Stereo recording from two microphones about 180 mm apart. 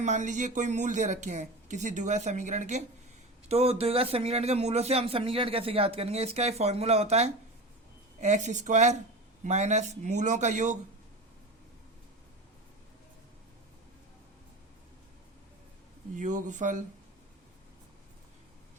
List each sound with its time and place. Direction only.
0.0 s a man's voice: 45° right (ahead or behind)
16.1 s speech: 45° right (ahead or behind)